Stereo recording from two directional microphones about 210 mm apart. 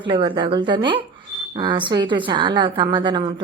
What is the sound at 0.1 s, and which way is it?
A woman's voice, 25° right (ahead or behind).